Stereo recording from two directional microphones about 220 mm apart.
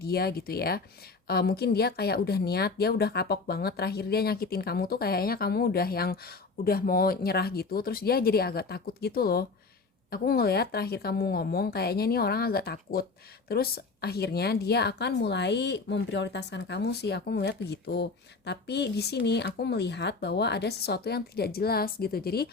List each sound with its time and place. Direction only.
0.0 s a woman's voice: 45° left (ahead or behind)